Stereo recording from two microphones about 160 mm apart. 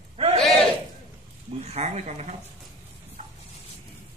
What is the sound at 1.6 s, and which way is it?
Speech, 40° right (ahead or behind).